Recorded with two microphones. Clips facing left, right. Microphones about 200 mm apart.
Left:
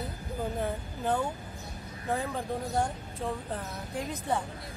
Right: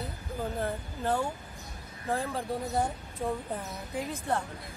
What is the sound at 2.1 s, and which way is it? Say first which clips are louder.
Speech: right 1 dB; centre (ahead or behind).